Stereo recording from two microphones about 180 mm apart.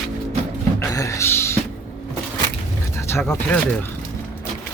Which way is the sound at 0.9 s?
20° left (ahead or behind).